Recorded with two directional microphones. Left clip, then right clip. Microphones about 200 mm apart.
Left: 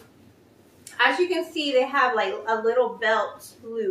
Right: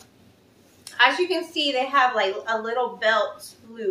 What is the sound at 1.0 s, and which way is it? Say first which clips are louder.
A woman's voice: right 2 dB; 10° left (ahead or behind).